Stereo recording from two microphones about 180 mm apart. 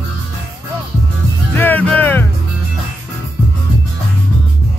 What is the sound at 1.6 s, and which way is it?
Music, 10° left (ahead or behind).